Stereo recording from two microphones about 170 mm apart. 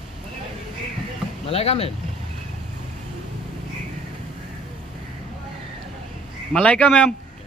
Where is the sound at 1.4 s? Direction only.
40° left (ahead or behind).